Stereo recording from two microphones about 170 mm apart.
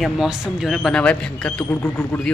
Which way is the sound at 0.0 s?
Centre (ahead or behind).